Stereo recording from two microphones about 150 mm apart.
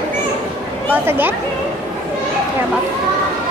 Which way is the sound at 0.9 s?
15° right (ahead or behind).